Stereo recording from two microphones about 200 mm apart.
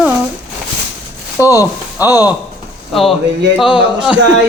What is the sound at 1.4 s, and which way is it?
Speech, 15° left (ahead or behind).